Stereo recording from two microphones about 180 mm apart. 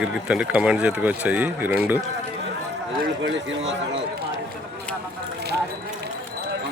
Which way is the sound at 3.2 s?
90° right.